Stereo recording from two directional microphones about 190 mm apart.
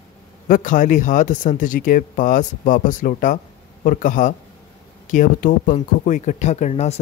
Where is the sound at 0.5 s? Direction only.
45° left (ahead or behind).